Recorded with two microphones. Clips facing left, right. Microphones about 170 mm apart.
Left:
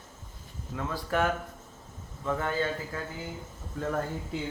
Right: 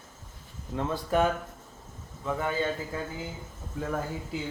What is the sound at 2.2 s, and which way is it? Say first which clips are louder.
Speech: even; 10° right (ahead or behind).